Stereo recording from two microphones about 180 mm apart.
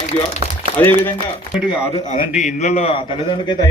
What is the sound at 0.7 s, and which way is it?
Speech, 10° left (ahead or behind).